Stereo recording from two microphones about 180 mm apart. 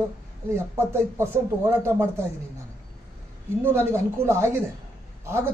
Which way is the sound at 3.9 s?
15° right (ahead or behind).